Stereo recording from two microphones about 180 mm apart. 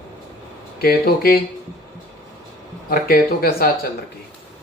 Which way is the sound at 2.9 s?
55° left (ahead or behind).